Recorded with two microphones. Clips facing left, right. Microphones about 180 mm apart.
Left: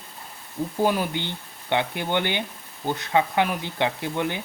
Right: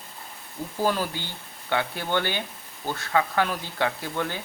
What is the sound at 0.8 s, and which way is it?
Speech, 20° left (ahead or behind).